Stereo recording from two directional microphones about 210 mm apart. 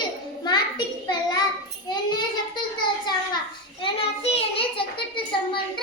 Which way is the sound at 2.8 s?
20° left (ahead or behind).